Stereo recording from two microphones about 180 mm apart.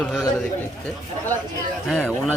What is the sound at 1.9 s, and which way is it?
Speech, centre (ahead or behind).